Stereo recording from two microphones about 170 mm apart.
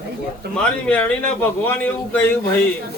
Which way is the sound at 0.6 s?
10° left (ahead or behind).